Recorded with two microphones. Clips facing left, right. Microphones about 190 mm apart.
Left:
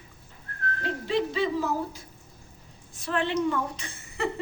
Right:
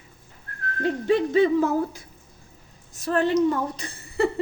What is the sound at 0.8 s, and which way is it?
Speech, 50° right (ahead or behind).